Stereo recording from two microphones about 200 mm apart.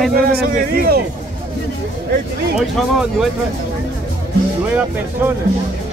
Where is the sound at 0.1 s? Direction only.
50° right (ahead or behind).